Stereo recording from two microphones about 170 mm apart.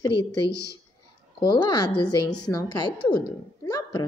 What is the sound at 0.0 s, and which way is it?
Speech, 25° left (ahead or behind).